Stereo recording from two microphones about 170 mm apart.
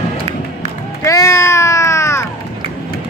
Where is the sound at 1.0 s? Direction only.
20° left (ahead or behind).